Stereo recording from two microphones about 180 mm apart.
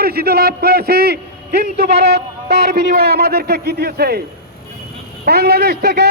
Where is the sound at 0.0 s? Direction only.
60° right (ahead or behind).